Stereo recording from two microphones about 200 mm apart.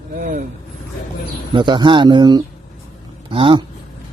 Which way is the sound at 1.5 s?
25° right (ahead or behind).